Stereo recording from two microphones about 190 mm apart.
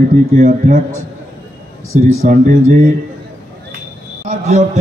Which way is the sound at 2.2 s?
45° right (ahead or behind).